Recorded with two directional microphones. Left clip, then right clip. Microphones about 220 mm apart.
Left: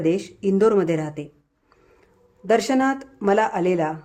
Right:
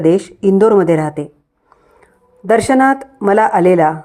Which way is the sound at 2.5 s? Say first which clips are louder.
Right 9 dB; 15° right (ahead or behind).